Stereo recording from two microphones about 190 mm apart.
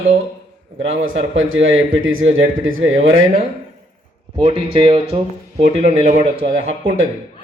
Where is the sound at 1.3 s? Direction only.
90° right.